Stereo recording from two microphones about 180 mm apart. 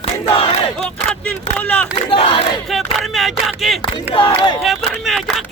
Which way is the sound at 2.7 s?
Centre (ahead or behind).